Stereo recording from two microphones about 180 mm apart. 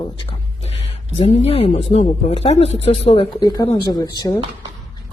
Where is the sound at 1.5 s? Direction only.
35° left (ahead or behind).